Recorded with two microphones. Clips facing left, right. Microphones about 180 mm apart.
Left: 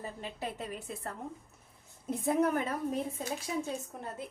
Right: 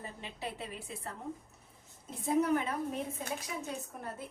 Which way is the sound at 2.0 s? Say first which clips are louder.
Left 2 dB; 60° left (ahead or behind).